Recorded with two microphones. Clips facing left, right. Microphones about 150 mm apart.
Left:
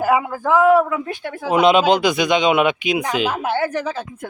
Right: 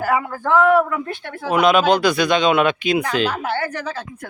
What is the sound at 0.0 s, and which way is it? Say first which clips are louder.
Speech: left 2 dB; 15° left (ahead or behind).